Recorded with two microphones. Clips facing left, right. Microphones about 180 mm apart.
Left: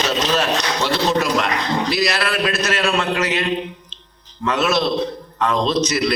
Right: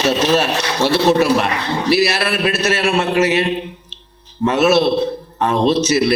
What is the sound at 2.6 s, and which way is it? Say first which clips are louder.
Speech: right 3 dB; 25° right (ahead or behind).